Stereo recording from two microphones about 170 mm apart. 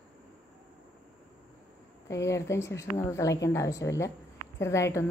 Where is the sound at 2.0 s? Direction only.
15° left (ahead or behind).